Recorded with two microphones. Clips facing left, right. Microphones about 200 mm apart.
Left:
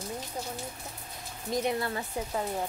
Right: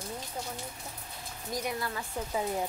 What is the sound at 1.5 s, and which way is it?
Speech, 25° left (ahead or behind).